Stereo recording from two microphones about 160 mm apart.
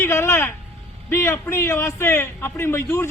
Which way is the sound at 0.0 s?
15° left (ahead or behind).